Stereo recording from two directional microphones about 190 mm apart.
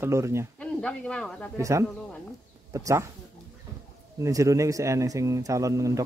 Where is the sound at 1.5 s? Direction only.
15° right (ahead or behind).